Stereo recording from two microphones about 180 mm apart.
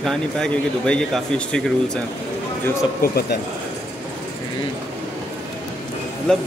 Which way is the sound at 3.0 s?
60° left (ahead or behind).